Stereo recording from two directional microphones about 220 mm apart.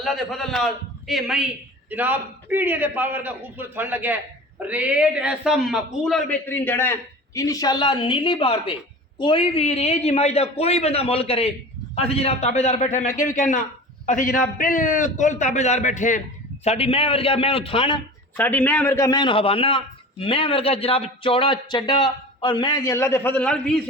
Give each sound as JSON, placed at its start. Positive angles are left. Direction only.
{"t": 0.0, "sound": "a man's voice", "side_deg": 0}
{"t": 18.3, "sound": "a man's voice", "side_deg": 10}